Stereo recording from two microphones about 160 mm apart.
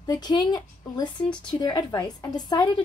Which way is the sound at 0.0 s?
25° left (ahead or behind).